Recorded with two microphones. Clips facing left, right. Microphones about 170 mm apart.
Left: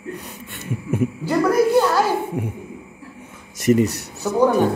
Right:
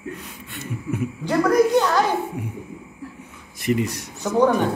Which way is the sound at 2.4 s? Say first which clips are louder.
Left 5 dB; 55° left (ahead or behind).